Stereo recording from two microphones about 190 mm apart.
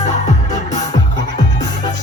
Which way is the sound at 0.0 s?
40° left (ahead or behind).